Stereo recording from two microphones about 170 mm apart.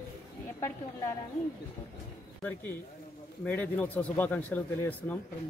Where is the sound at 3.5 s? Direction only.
10° left (ahead or behind).